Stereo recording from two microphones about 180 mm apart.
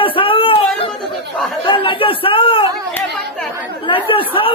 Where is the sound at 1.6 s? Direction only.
30° left (ahead or behind).